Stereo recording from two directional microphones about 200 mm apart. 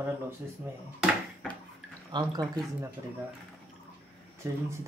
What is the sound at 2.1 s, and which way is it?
Speech, 20° right (ahead or behind).